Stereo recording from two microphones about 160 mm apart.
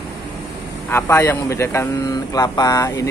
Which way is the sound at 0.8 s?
15° left (ahead or behind).